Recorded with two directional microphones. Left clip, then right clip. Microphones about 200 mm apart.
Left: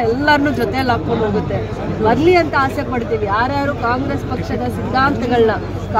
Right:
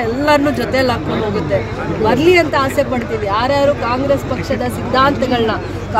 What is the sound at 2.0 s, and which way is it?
Speech, 10° right (ahead or behind).